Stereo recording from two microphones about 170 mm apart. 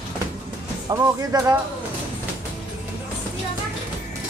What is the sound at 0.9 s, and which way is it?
Speech, 20° right (ahead or behind).